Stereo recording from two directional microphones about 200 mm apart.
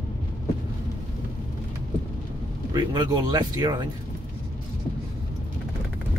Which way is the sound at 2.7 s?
20° right (ahead or behind).